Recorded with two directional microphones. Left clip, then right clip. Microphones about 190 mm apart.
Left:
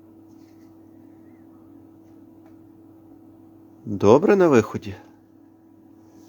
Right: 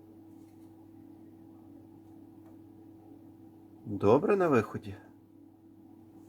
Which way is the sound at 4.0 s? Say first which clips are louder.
Left 10 dB; 50° left (ahead or behind).